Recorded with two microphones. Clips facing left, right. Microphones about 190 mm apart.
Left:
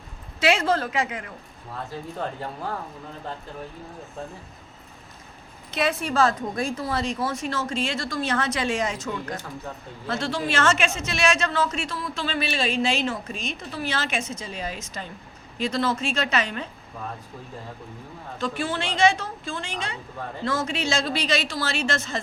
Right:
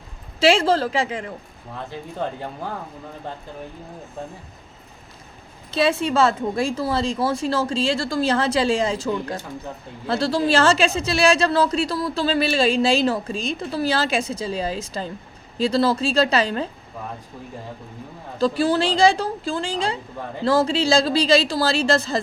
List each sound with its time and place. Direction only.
0.3 s a woman's voice: 30° right (ahead or behind)
5.7 s a woman's voice: 30° right (ahead or behind)
18.3 s speech: 35° right (ahead or behind)